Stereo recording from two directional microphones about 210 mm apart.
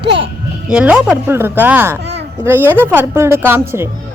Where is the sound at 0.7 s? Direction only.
5° right (ahead or behind).